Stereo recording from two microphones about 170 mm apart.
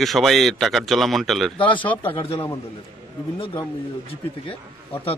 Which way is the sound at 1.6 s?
30° left (ahead or behind).